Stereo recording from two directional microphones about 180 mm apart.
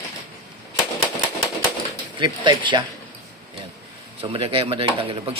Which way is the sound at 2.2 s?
25° right (ahead or behind).